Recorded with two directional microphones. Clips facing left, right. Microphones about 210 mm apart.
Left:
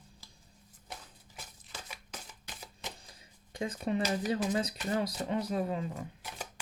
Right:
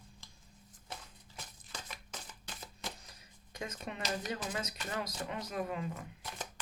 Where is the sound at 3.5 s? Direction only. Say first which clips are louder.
Left 9 dB; 30° left (ahead or behind).